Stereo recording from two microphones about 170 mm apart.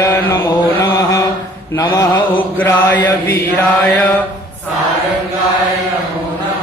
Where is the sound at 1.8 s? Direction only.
20° left (ahead or behind).